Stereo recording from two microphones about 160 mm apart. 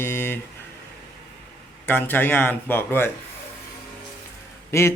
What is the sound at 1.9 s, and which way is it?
Speech, 10° left (ahead or behind).